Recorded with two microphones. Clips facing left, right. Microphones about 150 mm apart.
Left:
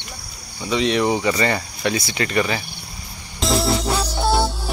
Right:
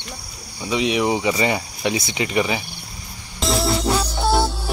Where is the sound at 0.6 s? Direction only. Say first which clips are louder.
Left 1 dB; 10° right (ahead or behind).